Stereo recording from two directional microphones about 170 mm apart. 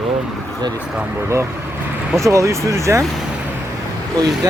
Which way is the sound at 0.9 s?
10° right (ahead or behind).